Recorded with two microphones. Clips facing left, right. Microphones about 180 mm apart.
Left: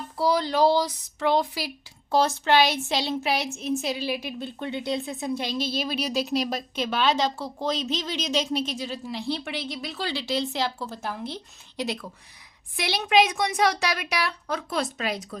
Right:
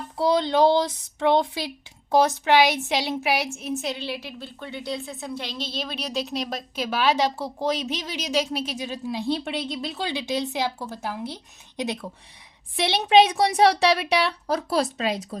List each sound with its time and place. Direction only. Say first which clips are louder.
0.2 s a woman's voice: right 2 dB; 20° right (ahead or behind)
12.7 s a woman's voice: right 4 dB; 25° right (ahead or behind)